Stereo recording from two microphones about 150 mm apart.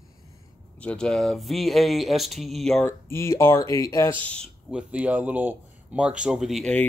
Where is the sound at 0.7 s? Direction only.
5° left (ahead or behind).